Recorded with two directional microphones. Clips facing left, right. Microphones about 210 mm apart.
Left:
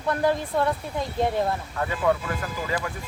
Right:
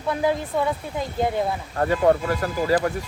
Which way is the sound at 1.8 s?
45° right (ahead or behind).